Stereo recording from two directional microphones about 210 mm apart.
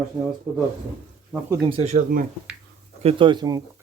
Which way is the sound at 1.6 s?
30° right (ahead or behind).